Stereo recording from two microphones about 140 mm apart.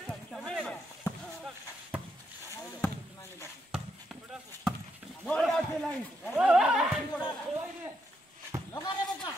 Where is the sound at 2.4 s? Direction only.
20° left (ahead or behind).